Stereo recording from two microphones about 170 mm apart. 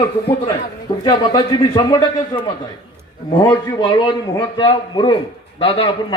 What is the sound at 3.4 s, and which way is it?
A man's voice, 30° left (ahead or behind).